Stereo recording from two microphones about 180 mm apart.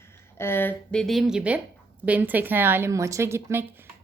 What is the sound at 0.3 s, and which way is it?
A woman's voice, 15° left (ahead or behind).